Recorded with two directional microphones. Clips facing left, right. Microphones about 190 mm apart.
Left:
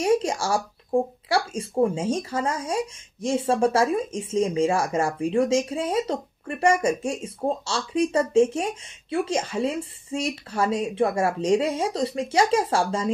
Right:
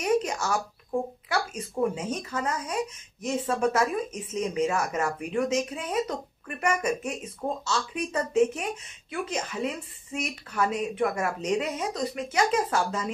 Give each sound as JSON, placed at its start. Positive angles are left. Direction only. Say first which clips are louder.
{"t": 0.0, "sound": "speech", "louder": "left 4 dB", "side_deg": 30}